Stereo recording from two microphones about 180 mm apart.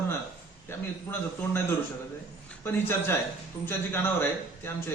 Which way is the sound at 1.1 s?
15° left (ahead or behind).